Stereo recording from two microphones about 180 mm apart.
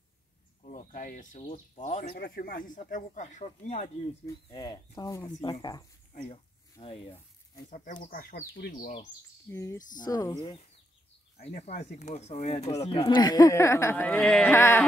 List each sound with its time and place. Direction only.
0.6 s speech: 45° left (ahead or behind)
2.1 s speech: 60° left (ahead or behind); by 3.9 s 40° left (ahead or behind)
4.5 s speech: 20° left (ahead or behind)
7.7 s speech: 45° left (ahead or behind)
9.5 s speech: 15° left (ahead or behind)
11.4 s speech: 35° left (ahead or behind); by 14.9 s 15° left (ahead or behind)